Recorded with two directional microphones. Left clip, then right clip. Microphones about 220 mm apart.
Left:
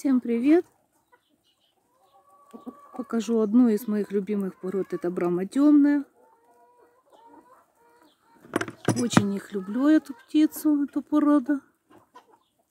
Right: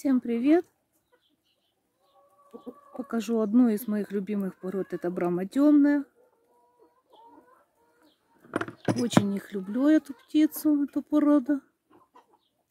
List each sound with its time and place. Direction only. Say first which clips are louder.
0.0 s speech: left 2 dB; centre (ahead or behind)
2.5 s speech: even; 35° left (ahead or behind)
2.9 s speech: left 3 dB; centre (ahead or behind)
8.4 s speech: left 3 dB; centre (ahead or behind)